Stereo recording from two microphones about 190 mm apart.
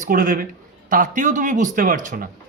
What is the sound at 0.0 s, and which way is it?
A man's voice, 45° right (ahead or behind).